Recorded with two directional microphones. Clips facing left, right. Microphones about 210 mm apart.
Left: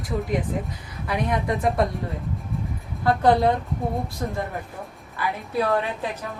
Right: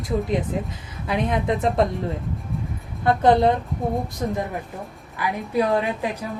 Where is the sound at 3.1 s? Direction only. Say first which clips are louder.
Right 2 dB; 20° right (ahead or behind).